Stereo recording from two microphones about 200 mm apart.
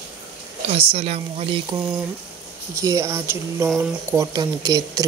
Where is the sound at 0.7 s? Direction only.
30° right (ahead or behind).